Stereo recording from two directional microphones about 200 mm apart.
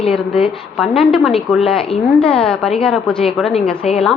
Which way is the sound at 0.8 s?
Centre (ahead or behind).